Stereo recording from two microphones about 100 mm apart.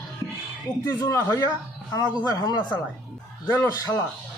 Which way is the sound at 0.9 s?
30° left (ahead or behind).